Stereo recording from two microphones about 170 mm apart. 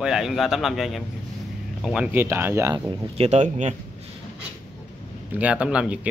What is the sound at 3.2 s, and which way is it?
Speech, 40° right (ahead or behind).